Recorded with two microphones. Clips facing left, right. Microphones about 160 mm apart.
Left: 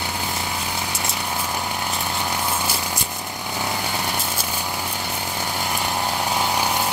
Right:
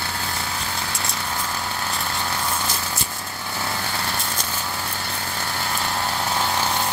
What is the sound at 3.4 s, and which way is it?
Vehicle, 15° left (ahead or behind).